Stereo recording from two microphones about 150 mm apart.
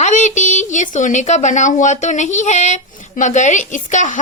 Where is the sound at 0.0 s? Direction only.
55° left (ahead or behind).